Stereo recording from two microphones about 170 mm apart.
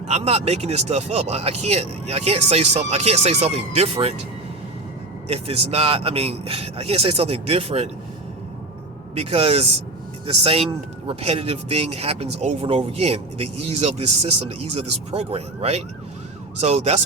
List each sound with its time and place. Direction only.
0.1 s speech: 40° right (ahead or behind)
5.3 s speech: 35° right (ahead or behind)
9.1 s speech: 35° right (ahead or behind)